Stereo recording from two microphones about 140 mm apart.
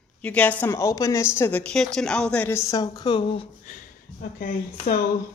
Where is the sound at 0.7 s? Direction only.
25° left (ahead or behind).